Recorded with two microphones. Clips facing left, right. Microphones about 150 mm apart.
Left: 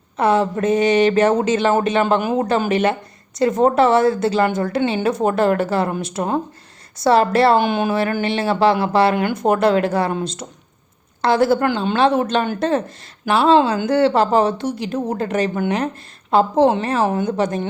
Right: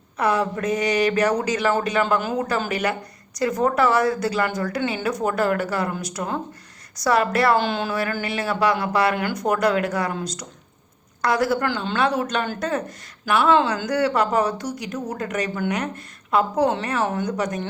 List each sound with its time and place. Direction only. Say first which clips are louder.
0.2 s a woman's voice: left 5 dB; 25° left (ahead or behind)
7.6 s a woman's voice: left 6 dB; 20° left (ahead or behind)